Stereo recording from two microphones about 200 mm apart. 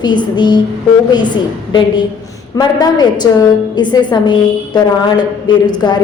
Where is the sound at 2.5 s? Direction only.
20° left (ahead or behind).